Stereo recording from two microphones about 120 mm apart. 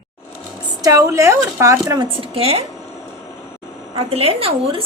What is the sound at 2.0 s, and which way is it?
Speech, 50° right (ahead or behind).